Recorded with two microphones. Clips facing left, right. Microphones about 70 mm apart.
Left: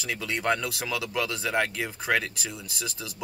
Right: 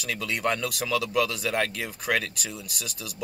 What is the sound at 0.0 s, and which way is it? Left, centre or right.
Speech, left.